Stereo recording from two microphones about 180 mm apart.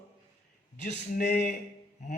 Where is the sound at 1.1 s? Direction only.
40° left (ahead or behind).